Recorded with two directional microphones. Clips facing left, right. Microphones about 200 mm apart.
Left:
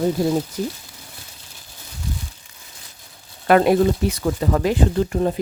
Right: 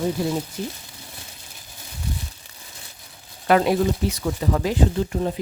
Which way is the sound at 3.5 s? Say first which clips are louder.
Left 4 dB; 55° left (ahead or behind).